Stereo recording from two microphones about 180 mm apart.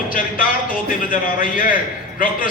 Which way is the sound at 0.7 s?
50° left (ahead or behind).